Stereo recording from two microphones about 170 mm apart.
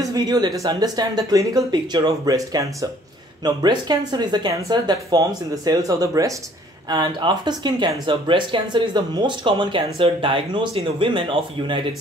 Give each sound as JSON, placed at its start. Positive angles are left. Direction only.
{"t": 0.0, "sound": "speech", "side_deg": -20}